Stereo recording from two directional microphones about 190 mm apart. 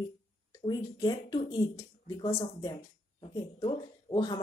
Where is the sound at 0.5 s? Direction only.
20° left (ahead or behind).